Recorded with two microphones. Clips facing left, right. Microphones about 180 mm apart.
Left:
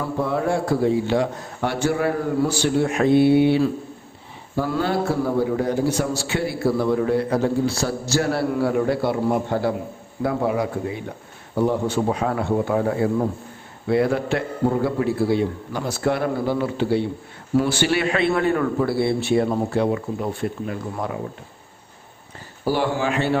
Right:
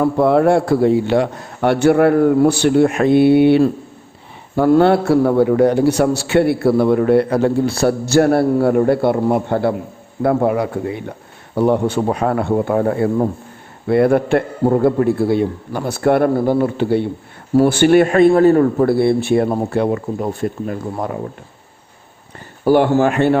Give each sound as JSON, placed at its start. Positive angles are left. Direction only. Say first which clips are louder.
{"t": 0.0, "sound": "a man's voice", "louder": "right 10 dB", "side_deg": -65}
{"t": 18.9, "sound": "speech", "louder": "right 6 dB", "side_deg": -55}
{"t": 22.6, "sound": "speech", "louder": "right 9 dB", "side_deg": -55}